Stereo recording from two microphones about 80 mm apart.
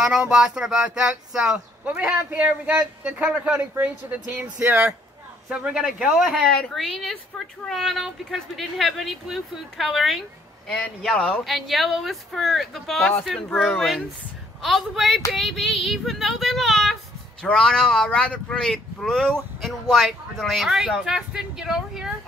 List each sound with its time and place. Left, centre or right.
0.0 s speech: centre
11.4 s speech: centre